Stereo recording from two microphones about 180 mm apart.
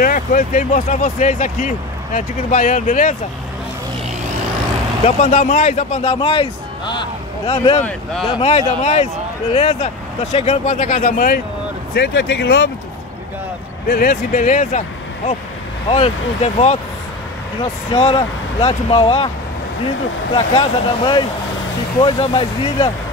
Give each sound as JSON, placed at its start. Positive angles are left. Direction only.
{"t": 0.0, "sound": "speech", "side_deg": 50}
{"t": 5.0, "sound": "a man's voice", "side_deg": 40}
{"t": 11.9, "sound": "speech", "side_deg": 70}
{"t": 13.8, "sound": "speech", "side_deg": 55}
{"t": 17.9, "sound": "speech", "side_deg": 35}
{"t": 20.3, "sound": "speech", "side_deg": 25}